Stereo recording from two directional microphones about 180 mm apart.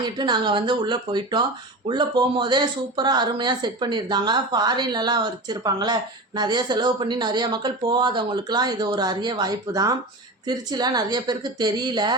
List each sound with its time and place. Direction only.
0.0 s speech: 25° right (ahead or behind)